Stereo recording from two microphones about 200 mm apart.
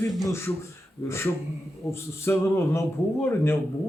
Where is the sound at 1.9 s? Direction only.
15° left (ahead or behind).